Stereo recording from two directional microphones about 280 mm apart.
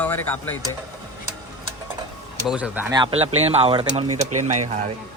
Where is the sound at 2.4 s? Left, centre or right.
Centre; by 3.8 s right.